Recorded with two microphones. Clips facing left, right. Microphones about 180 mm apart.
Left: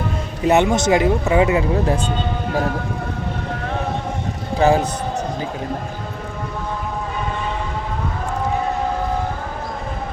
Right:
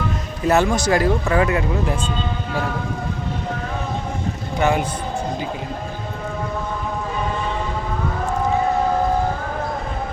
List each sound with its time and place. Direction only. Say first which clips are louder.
0.4 s speech: left 2 dB; 20° left (ahead or behind)
4.5 s a man's voice: left 4 dB; 35° left (ahead or behind)